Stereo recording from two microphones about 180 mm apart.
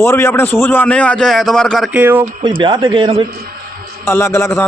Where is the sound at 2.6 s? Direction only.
25° right (ahead or behind).